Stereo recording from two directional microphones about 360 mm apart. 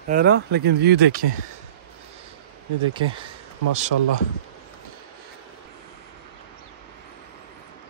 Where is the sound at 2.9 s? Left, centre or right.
Centre.